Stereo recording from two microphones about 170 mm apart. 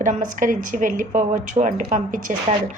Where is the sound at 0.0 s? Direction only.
50° right (ahead or behind).